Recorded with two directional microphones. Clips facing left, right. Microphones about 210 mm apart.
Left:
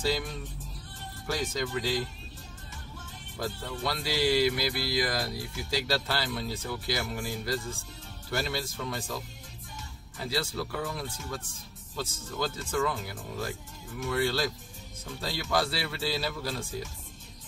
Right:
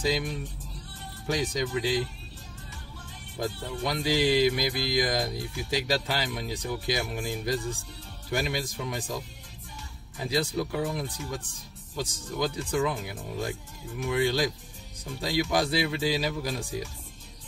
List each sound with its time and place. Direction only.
0.0 s music: 15° right (ahead or behind)
3.3 s music: 20° right (ahead or behind)